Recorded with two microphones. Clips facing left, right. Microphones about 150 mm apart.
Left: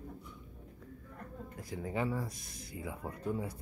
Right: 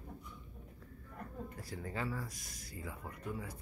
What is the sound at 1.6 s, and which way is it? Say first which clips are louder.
Speech: left 6 dB; 20° left (ahead or behind).